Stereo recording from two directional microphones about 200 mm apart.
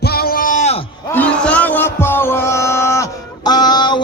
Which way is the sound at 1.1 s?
5° left (ahead or behind).